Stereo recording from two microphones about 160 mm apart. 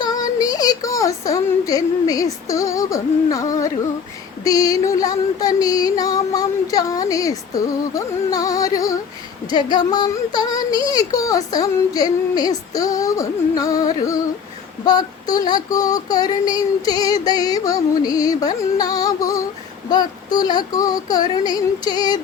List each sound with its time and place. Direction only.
0.0 s speech: 25° left (ahead or behind)
4.4 s child singing: 20° left (ahead or behind)